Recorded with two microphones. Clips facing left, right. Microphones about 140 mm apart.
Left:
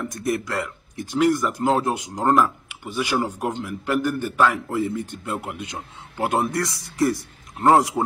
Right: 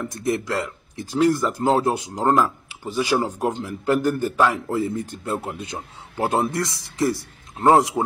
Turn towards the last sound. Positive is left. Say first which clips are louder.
# right 1 dB
turn(degrees=-20)  # may be behind; listen again after turning